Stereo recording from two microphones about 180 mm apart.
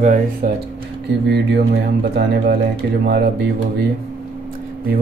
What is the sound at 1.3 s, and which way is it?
Speech, 65° right (ahead or behind).